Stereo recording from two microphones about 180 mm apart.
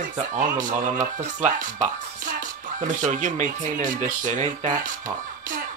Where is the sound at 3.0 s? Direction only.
45° right (ahead or behind).